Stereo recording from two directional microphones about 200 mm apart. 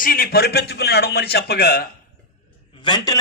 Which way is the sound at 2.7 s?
25° left (ahead or behind).